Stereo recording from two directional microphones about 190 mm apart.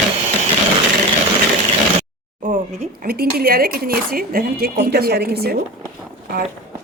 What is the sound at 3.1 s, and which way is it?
Speech, 50° right (ahead or behind).